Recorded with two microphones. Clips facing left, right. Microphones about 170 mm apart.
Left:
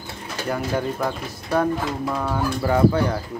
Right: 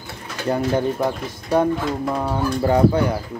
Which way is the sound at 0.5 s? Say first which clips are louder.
Right 5 dB; 20° right (ahead or behind).